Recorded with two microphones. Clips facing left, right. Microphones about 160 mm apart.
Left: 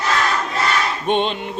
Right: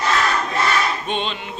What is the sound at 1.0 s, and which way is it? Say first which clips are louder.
Music: left 6 dB; 55° left (ahead or behind).